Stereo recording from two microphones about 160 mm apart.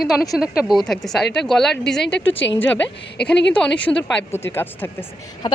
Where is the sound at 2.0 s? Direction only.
90° left.